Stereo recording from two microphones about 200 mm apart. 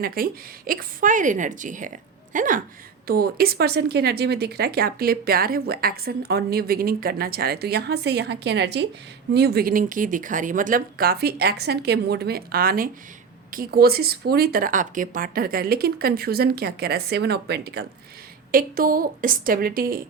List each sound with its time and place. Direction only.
0.0 s a woman's voice: 45° right (ahead or behind)